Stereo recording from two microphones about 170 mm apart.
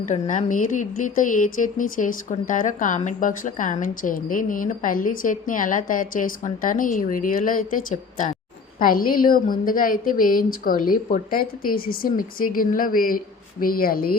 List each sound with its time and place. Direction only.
0.1 s a woman's voice: 45° left (ahead or behind)
8.8 s a woman's voice: 55° left (ahead or behind)